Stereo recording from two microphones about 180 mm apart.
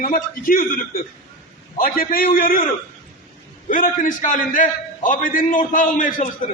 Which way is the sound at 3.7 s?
50° left (ahead or behind).